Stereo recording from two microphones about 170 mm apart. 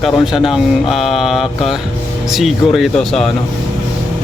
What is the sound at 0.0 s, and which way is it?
Speech, centre (ahead or behind).